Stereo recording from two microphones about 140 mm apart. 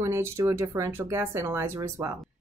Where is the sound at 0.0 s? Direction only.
20° right (ahead or behind).